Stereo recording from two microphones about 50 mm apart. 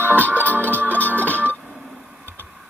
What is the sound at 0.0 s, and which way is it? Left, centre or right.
Music, left.